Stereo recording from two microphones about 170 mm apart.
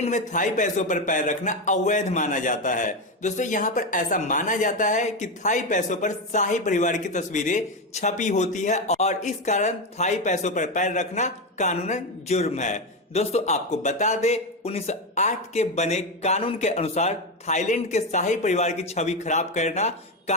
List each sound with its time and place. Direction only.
0.0 s a man's voice: 45° left (ahead or behind)